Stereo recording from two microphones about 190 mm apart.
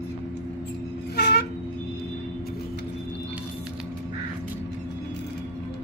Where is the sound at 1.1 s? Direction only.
60° left (ahead or behind).